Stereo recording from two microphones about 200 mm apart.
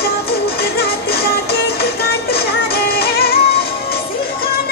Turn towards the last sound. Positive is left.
turn(degrees=50)  # may be behind; listen again after turning